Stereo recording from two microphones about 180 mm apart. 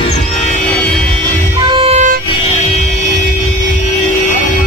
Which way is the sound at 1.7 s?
30° right (ahead or behind).